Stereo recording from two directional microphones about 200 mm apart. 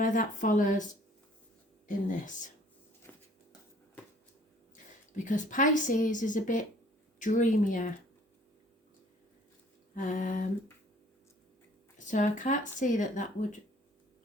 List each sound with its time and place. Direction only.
0.0 s speech: 40° left (ahead or behind)
1.9 s speech: 40° left (ahead or behind)
3.1 s a sound: 10° left (ahead or behind)
5.1 s speech: 40° left (ahead or behind)
9.9 s speech: 40° left (ahead or behind)
11.9 s speech: 40° left (ahead or behind)